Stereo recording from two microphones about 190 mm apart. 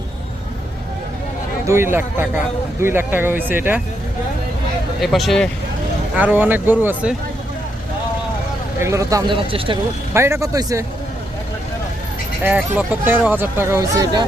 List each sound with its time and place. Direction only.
1.6 s speech: 15° right (ahead or behind)
4.9 s speech: centre (ahead or behind)
8.8 s speech: 15° right (ahead or behind)
10.2 s speech: 15° right (ahead or behind)
12.4 s speech: 10° right (ahead or behind)